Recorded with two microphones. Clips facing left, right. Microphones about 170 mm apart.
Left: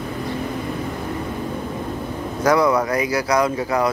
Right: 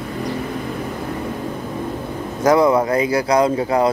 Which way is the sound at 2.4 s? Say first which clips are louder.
Right 3 dB; 25° right (ahead or behind).